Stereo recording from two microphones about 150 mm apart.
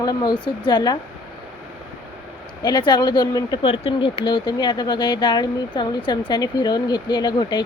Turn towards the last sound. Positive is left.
turn(degrees=30)  # may be behind; listen again after turning